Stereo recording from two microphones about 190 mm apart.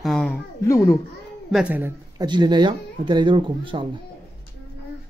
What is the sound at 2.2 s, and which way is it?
Speech, 25° right (ahead or behind).